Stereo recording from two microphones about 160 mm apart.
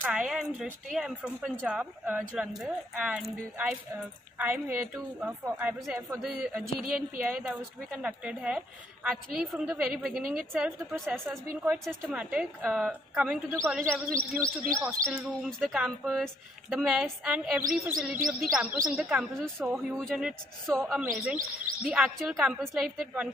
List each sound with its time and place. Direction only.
0.0 s a woman's voice: 5° right (ahead or behind)
15.1 s a woman's voice: 5° right (ahead or behind)